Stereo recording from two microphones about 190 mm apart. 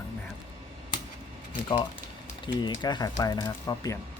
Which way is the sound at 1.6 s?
25° left (ahead or behind).